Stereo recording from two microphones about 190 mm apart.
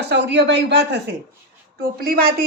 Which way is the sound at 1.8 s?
50° right (ahead or behind).